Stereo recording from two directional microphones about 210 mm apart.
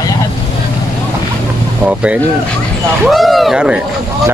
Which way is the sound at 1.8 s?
5° right (ahead or behind).